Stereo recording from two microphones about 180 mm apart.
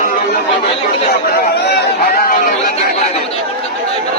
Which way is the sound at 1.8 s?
55° left (ahead or behind).